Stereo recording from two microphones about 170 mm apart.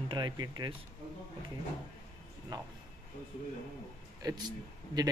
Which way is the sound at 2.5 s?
25° right (ahead or behind).